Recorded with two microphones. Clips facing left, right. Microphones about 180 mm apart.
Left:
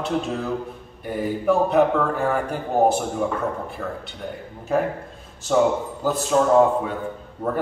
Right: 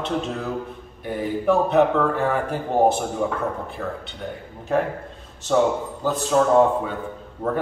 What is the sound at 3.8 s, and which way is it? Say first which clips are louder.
A man's voice: even; centre (ahead or behind).